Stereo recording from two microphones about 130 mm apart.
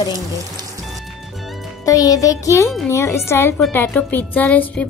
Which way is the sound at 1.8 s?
25° left (ahead or behind).